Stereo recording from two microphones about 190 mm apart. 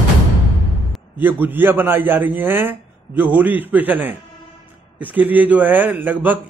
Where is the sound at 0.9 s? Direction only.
10° right (ahead or behind).